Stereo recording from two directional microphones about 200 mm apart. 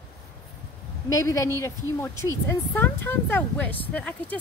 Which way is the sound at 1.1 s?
15° left (ahead or behind).